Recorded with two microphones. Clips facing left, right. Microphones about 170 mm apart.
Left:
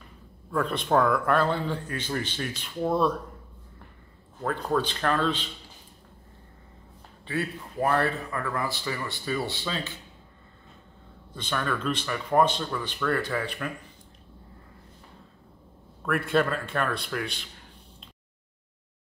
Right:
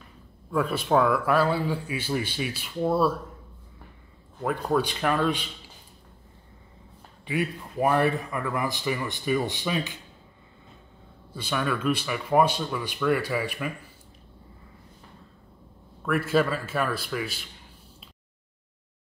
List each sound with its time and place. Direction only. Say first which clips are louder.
0.5 s speech: right 1 dB; 5° right (ahead or behind)
4.5 s speech: right 2 dB; 10° right (ahead or behind)
7.2 s speech: right 2 dB; 15° right (ahead or behind)
11.3 s speech: right 2 dB; 10° right (ahead or behind)
16.1 s a man's voice: right 1 dB; centre (ahead or behind)